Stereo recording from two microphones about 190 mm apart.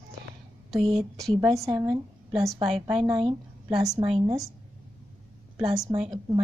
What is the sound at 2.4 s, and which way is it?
Speech, centre (ahead or behind).